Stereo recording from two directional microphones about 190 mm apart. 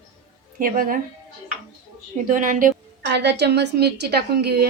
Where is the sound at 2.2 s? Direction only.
45° right (ahead or behind).